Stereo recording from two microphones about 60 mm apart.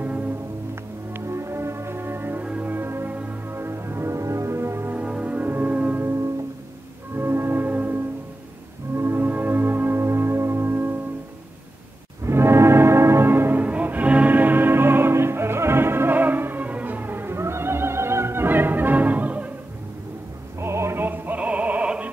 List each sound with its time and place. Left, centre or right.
0.0 s music: right
1.1 s music: right
2.6 s church bell: right
3.1 s music: right
3.5 s music: right
4.9 s music: right
7.2 s music: right
8.9 s music: right
12.3 s music: right
20.5 s music: right
21.0 s music: right